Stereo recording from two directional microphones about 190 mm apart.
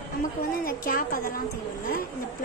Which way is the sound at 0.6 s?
50° left (ahead or behind).